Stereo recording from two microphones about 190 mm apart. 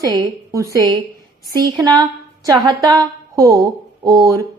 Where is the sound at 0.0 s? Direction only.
20° right (ahead or behind).